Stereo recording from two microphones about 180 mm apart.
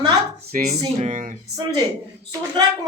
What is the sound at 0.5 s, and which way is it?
Speech, 40° right (ahead or behind).